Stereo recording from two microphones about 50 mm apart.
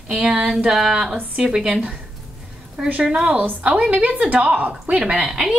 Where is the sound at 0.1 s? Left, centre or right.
Centre.